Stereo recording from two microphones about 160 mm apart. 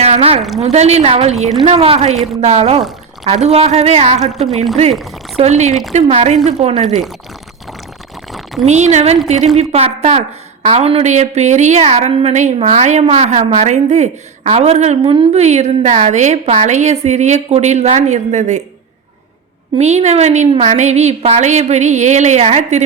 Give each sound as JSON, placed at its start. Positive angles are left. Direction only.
{"t": 0.0, "sound": "a sound", "side_deg": -40}
{"t": 0.6, "sound": "a woman's voice", "side_deg": -40}
{"t": 5.4, "sound": "a woman's voice", "side_deg": -45}
{"t": 8.6, "sound": "a woman's voice", "side_deg": -45}
{"t": 19.8, "sound": "a woman's voice", "side_deg": -45}